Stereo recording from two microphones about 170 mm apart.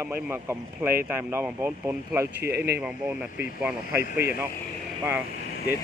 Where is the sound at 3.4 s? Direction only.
10° right (ahead or behind).